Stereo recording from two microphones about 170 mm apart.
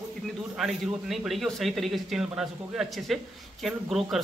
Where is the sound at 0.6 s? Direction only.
Centre (ahead or behind).